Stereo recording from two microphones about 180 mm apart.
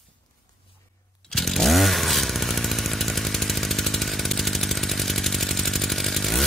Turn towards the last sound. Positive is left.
turn(degrees=0)  # may be behind; listen again after turning